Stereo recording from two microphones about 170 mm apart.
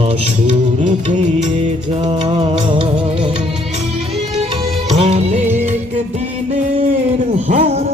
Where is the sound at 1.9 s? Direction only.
35° right (ahead or behind).